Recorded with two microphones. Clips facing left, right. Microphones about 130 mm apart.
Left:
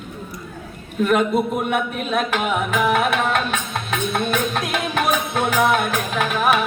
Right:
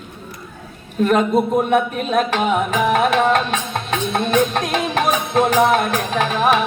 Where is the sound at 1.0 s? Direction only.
35° right (ahead or behind).